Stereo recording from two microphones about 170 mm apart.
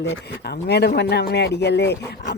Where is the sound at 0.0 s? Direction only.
75° left (ahead or behind).